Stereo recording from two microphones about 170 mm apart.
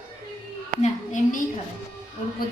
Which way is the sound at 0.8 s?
50° left (ahead or behind).